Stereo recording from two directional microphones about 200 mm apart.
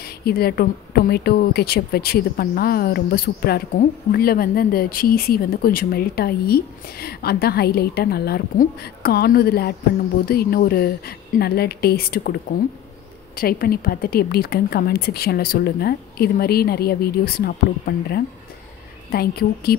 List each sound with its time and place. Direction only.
0.2 s speech: 50° left (ahead or behind)
13.4 s speech: 50° left (ahead or behind)